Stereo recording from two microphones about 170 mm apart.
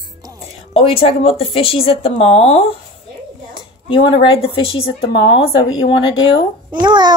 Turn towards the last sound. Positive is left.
turn(degrees=-25)  # may be behind; listen again after turning